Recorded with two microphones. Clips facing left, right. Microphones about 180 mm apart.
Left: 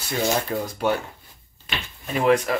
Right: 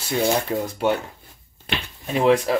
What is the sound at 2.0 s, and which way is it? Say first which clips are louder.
Speech: right 2 dB; 30° right (ahead or behind).